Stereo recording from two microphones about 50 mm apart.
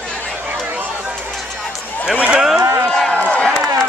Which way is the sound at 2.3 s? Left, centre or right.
Centre.